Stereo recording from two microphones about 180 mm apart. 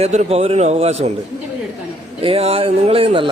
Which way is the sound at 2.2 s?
35° right (ahead or behind).